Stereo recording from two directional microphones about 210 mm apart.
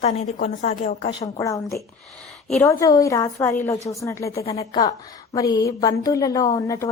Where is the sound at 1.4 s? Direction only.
15° left (ahead or behind).